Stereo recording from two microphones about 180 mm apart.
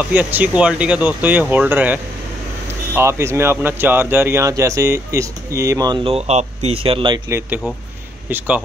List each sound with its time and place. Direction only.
0.1 s speech: 10° right (ahead or behind)
3.0 s speech: 15° right (ahead or behind)
6.0 s speech: 35° right (ahead or behind)
7.2 s speech: 10° right (ahead or behind)